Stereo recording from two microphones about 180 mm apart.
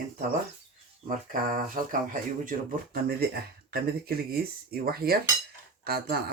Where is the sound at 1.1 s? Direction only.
50° right (ahead or behind).